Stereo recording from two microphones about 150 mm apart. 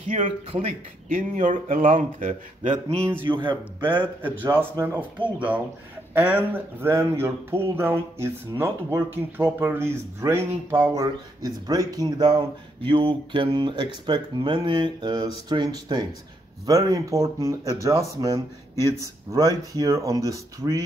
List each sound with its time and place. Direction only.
0.1 s speech: 50° right (ahead or behind)
0.5 s speech: 40° right (ahead or behind)
1.1 s speech: 60° right (ahead or behind)
3.3 s speech: 35° right (ahead or behind)
4.2 s speech: 15° right (ahead or behind)
6.1 s speech: 15° right (ahead or behind)
12.4 s speech: 35° right (ahead or behind)